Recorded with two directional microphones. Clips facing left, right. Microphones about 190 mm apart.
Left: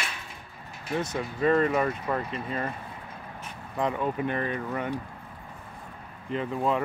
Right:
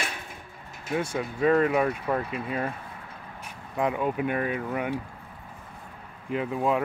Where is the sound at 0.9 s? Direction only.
10° right (ahead or behind).